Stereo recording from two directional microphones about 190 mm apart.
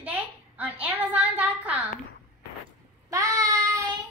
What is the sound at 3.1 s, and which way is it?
Child singing, 15° right (ahead or behind).